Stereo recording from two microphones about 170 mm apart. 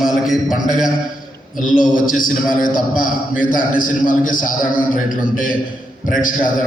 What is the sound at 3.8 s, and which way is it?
A man's voice, 55° left (ahead or behind).